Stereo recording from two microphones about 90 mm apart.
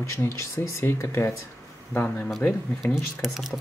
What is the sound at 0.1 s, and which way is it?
Speech, 30° left (ahead or behind).